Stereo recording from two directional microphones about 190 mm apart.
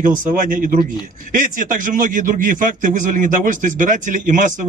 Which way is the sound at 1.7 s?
45° right (ahead or behind).